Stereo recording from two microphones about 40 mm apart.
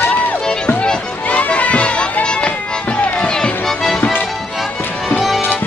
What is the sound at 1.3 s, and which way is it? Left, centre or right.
Run, left.